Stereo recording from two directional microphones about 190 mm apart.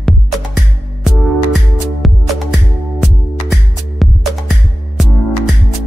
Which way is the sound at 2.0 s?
Centre (ahead or behind).